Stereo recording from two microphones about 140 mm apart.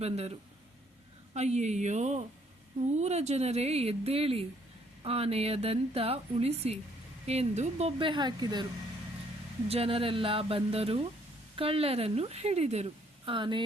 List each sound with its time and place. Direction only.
0.0 s a woman's voice: 50° right (ahead or behind); by 8.6 s 30° right (ahead or behind)
9.6 s a woman's voice: 45° right (ahead or behind)